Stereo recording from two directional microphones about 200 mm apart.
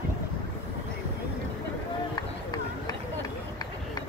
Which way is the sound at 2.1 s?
20° left (ahead or behind).